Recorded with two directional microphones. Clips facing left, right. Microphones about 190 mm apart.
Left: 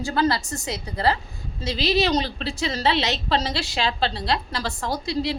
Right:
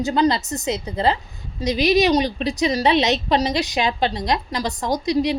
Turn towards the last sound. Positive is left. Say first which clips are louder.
# right 5 dB
turn(degrees=-20)  # may be behind; listen again after turning